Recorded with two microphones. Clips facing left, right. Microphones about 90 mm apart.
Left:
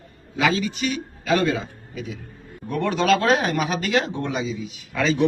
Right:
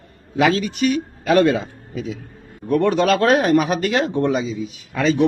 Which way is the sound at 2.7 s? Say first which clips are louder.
Right 4 dB; 45° right (ahead or behind).